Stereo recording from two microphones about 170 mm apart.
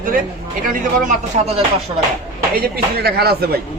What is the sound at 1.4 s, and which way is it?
Speech, 35° right (ahead or behind).